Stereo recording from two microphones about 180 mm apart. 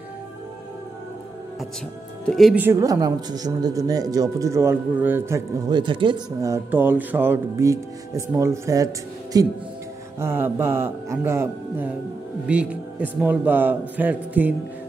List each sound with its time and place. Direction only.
2.2 s speech: centre (ahead or behind)
2.6 s speech: 15° right (ahead or behind)
5.7 s speech: 25° right (ahead or behind); by 14.5 s 10° right (ahead or behind)